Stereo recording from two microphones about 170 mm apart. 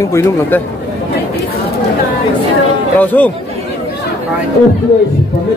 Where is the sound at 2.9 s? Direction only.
10° left (ahead or behind).